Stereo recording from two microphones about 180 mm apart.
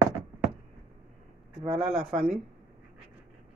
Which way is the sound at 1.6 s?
30° right (ahead or behind).